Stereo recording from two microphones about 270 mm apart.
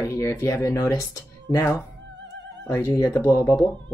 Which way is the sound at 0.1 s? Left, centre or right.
Centre.